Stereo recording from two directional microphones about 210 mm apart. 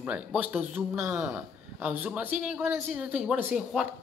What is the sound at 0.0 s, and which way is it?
A man's voice, 5° right (ahead or behind).